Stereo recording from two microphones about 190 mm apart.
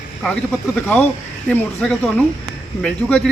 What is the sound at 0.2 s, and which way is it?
Speech, 5° left (ahead or behind).